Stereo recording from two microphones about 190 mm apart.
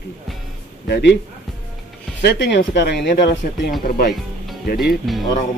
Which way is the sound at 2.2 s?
65° left (ahead or behind).